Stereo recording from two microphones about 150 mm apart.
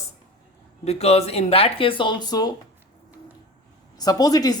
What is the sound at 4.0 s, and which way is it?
Speech, 25° left (ahead or behind).